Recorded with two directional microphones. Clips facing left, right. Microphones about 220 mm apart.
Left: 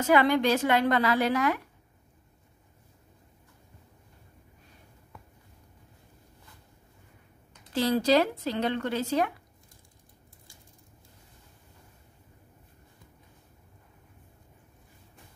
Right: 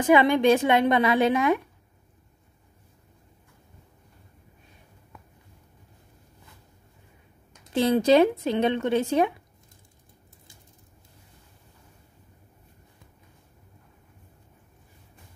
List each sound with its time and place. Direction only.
0.0 s a woman's voice: 20° right (ahead or behind)
7.7 s a woman's voice: 20° right (ahead or behind)